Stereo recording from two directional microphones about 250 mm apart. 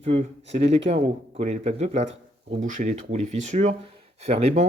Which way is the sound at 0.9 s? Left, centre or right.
Right.